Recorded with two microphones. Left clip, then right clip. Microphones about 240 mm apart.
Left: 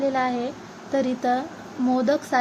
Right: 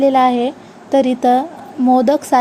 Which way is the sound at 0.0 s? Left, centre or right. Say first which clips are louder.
Right 11 dB; right.